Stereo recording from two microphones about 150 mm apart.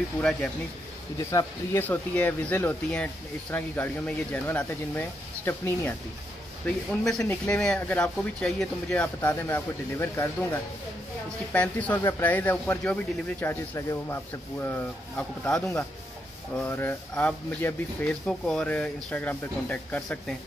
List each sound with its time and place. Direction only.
0.2 s speech: 5° left (ahead or behind)
6.9 s speech: 5° left (ahead or behind)